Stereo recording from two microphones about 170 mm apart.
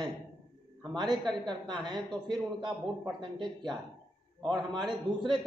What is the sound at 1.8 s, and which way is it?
A man's voice, 25° right (ahead or behind).